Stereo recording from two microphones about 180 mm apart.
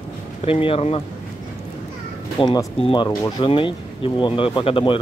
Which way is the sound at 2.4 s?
25° left (ahead or behind).